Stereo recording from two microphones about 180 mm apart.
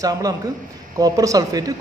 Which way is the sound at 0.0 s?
20° right (ahead or behind).